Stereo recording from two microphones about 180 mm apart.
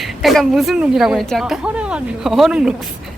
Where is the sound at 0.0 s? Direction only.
Centre (ahead or behind).